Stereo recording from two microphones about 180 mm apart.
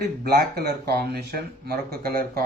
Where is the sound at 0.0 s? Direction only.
60° right (ahead or behind).